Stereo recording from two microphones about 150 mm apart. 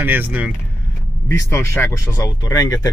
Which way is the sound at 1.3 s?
15° left (ahead or behind).